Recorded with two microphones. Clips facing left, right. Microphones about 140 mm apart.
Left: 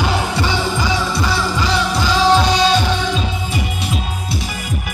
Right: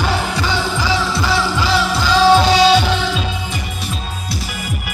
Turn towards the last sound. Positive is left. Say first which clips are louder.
# right 2 dB
turn(degrees=-5)  # may be behind; listen again after turning